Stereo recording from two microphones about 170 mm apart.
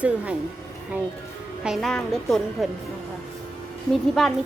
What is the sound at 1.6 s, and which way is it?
A woman's voice, centre (ahead or behind).